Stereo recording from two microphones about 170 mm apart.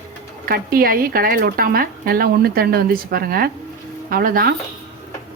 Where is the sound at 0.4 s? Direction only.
60° right (ahead or behind).